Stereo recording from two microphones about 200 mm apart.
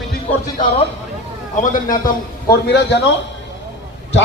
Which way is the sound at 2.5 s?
55° left (ahead or behind).